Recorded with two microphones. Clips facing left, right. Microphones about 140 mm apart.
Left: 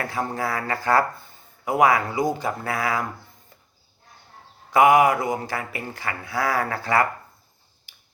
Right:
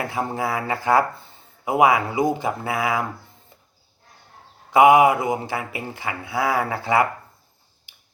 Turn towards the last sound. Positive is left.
turn(degrees=-20)  # may be behind; listen again after turning